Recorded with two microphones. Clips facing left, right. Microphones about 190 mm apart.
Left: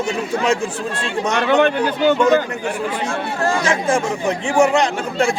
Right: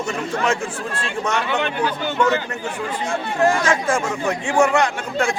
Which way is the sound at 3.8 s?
15° left (ahead or behind).